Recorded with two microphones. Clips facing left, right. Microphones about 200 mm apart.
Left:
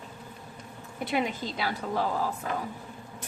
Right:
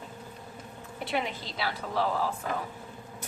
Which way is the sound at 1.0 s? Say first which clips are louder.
Left 3 dB; 45° left (ahead or behind).